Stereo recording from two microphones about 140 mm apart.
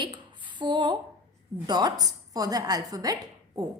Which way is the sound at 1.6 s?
30° right (ahead or behind).